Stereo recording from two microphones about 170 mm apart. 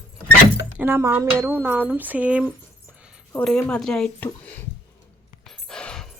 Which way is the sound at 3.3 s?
5° left (ahead or behind).